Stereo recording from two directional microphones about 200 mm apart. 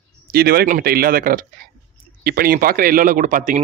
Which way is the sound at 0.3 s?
50° right (ahead or behind).